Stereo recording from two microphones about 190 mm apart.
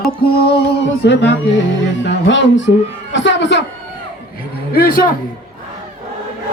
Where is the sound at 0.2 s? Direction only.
60° left (ahead or behind).